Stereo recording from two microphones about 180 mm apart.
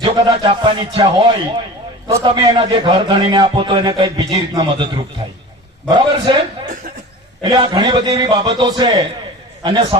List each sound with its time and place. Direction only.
0.0 s speech: 25° right (ahead or behind)
5.9 s speech: 25° right (ahead or behind)
7.4 s speech: 25° right (ahead or behind)